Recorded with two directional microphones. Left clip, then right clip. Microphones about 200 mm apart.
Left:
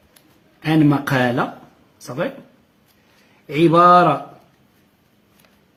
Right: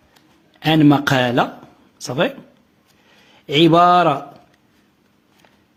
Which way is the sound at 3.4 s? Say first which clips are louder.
Right 1 dB; 50° right (ahead or behind).